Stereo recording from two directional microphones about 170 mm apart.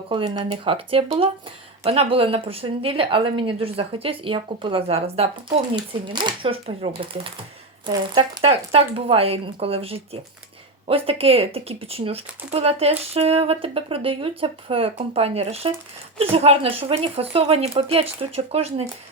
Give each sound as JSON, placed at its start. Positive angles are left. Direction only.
{"t": 0.1, "sound": "a woman's voice", "side_deg": -25}